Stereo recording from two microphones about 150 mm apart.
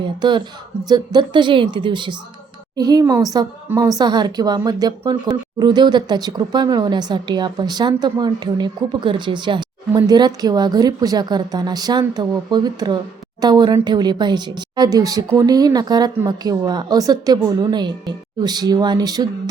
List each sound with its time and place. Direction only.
0.0 s a woman's voice: 30° right (ahead or behind)